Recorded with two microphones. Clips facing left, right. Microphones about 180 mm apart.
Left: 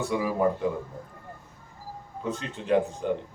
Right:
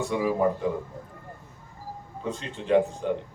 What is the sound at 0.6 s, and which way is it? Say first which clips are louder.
Speech: even; 5° left (ahead or behind).